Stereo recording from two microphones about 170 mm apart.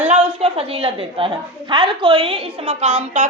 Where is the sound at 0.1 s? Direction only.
35° right (ahead or behind).